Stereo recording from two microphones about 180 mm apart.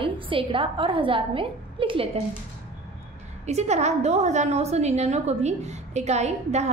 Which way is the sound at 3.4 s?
40° right (ahead or behind).